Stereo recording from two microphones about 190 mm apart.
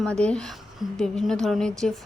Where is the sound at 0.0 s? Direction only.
5° left (ahead or behind).